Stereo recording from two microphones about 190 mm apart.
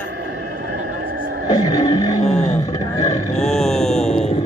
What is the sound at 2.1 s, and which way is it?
Roar, 40° left (ahead or behind).